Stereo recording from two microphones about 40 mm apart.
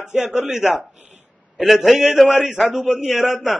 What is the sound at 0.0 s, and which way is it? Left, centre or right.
Speech, centre.